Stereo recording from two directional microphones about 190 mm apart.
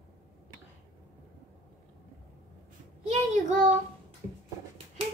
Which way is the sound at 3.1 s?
40° right (ahead or behind).